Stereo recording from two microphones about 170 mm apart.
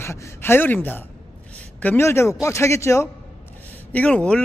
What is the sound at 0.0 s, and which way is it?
A woman's voice, 15° left (ahead or behind).